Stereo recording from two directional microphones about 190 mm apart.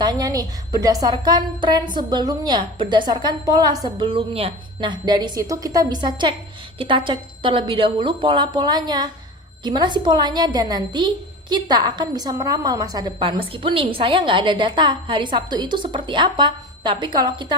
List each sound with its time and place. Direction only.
0.0 s a woman's voice: 20° right (ahead or behind)